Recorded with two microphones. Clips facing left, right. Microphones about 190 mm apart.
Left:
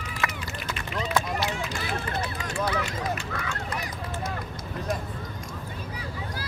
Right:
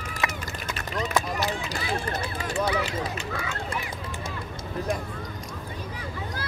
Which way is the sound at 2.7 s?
20° right (ahead or behind).